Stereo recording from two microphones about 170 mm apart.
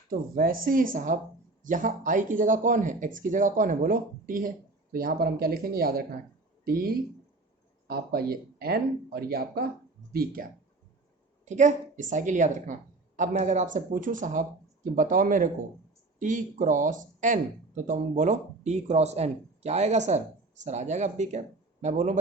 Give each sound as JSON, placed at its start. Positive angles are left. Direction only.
{"t": 0.1, "sound": "speech", "side_deg": -55}
{"t": 11.4, "sound": "speech", "side_deg": -45}